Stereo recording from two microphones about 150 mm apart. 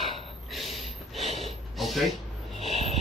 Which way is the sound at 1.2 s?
40° right (ahead or behind).